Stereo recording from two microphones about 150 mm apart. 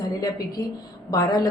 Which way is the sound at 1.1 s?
25° left (ahead or behind).